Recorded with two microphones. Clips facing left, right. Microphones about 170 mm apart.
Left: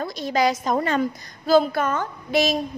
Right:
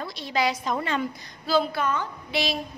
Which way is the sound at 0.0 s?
45° left (ahead or behind).